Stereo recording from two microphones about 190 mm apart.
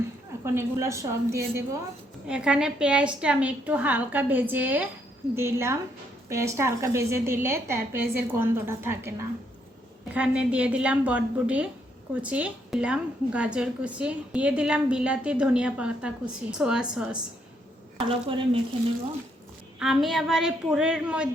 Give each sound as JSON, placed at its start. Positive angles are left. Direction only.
{"t": 0.4, "sound": "a woman's voice", "side_deg": -15}
{"t": 10.2, "sound": "a woman's voice", "side_deg": -5}
{"t": 18.1, "sound": "speech", "side_deg": -25}
{"t": 19.8, "sound": "a woman's voice", "side_deg": 0}